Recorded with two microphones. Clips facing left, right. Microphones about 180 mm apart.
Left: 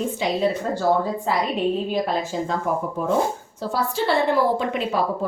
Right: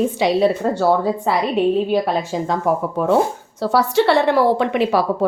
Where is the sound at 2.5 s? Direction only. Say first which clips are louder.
Right 7 dB; 75° right (ahead or behind).